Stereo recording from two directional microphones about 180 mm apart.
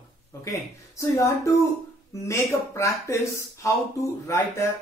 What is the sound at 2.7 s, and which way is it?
Speech, 15° left (ahead or behind).